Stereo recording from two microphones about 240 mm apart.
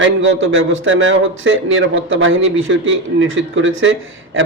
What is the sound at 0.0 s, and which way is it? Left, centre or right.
A man's voice, right.